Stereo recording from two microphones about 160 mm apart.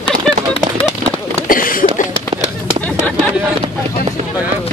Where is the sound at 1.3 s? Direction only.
60° left (ahead or behind).